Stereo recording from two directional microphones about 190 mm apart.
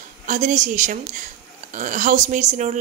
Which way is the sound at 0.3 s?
40° right (ahead or behind).